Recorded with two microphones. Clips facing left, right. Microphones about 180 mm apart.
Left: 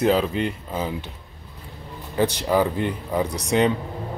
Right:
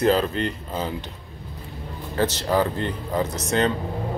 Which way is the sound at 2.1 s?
10° left (ahead or behind).